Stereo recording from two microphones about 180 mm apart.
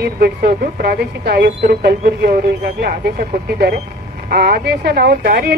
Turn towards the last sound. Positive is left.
turn(degrees=-60)  # may be behind; listen again after turning